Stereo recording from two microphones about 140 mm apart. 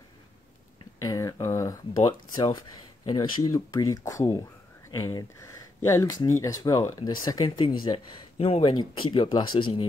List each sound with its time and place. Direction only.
1.0 s speech: 25° left (ahead or behind)